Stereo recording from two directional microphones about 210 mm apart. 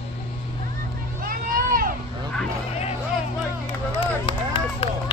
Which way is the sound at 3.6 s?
25° left (ahead or behind).